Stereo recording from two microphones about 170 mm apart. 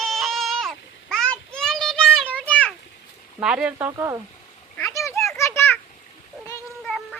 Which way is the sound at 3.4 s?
5° right (ahead or behind).